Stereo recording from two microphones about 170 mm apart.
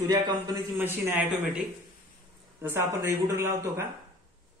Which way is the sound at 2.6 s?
15° right (ahead or behind).